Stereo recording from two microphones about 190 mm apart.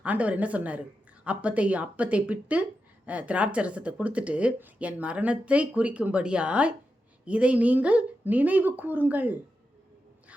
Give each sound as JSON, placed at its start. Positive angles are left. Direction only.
{"t": 0.0, "sound": "speech", "side_deg": -5}